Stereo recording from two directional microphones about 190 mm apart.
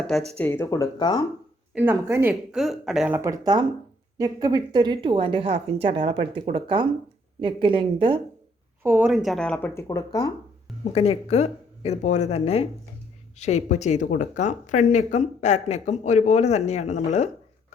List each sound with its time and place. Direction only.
0.3 s speech: 10° left (ahead or behind)
1.7 s a woman's voice: 10° right (ahead or behind)
3.2 s a woman's voice: 20° right (ahead or behind)
8.8 s speech: 10° right (ahead or behind); by 10.3 s 20° left (ahead or behind)
10.9 s speech: 30° left (ahead or behind)